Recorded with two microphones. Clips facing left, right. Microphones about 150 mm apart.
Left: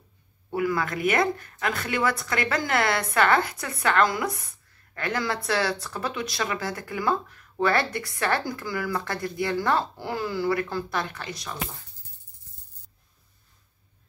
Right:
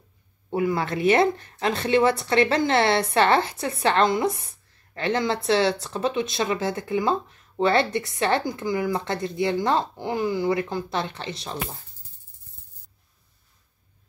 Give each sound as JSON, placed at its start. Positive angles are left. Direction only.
{"t": 0.5, "sound": "speech", "side_deg": -25}